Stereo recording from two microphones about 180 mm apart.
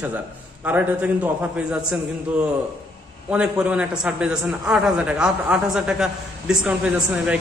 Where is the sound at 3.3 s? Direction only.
5° right (ahead or behind).